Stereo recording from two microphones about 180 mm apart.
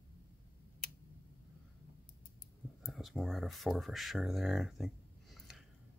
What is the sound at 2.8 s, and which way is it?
Speech, centre (ahead or behind).